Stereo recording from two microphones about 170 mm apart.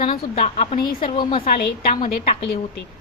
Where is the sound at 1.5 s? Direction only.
60° left (ahead or behind).